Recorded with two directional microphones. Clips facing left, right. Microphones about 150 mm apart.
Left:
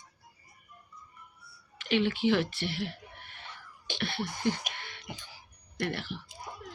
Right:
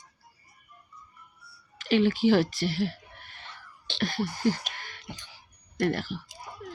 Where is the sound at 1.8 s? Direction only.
40° right (ahead or behind).